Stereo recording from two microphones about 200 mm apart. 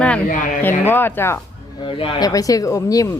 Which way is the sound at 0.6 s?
10° left (ahead or behind).